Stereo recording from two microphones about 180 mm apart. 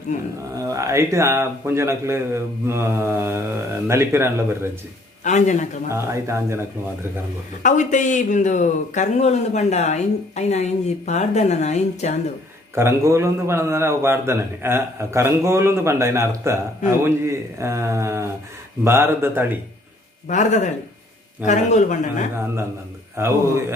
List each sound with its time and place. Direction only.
0.5 s a man's voice: 20° right (ahead or behind)
5.2 s a man's voice: 40° left (ahead or behind)
5.9 s a man's voice: 15° right (ahead or behind)
7.6 s a man's voice: 45° left (ahead or behind)
12.7 s a man's voice: 15° right (ahead or behind)
20.2 s a man's voice: 40° left (ahead or behind)
23.1 s a man's voice: 15° right (ahead or behind)